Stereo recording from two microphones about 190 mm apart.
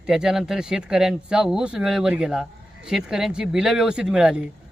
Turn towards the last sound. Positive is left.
turn(degrees=-5)  # may be behind; listen again after turning